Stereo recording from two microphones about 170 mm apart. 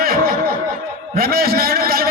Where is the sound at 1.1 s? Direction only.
60° right (ahead or behind).